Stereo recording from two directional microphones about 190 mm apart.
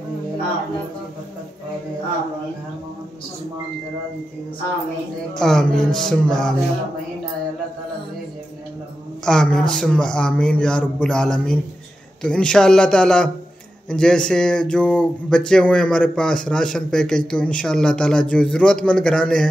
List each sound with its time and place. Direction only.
5.4 s speech: 5° left (ahead or behind)
9.2 s speech: 5° left (ahead or behind)